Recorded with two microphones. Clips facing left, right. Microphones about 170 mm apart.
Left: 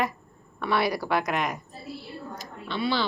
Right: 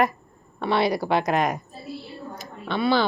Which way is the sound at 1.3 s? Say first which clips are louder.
Right 6 dB; 40° right (ahead or behind).